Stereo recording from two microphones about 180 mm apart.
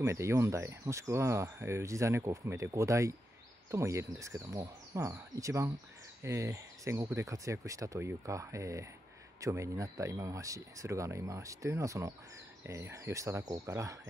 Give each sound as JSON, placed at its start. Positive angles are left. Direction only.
{"t": 0.0, "sound": "speech", "side_deg": -15}